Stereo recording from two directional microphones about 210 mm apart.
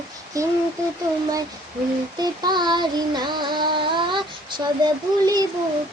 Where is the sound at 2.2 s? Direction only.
20° right (ahead or behind).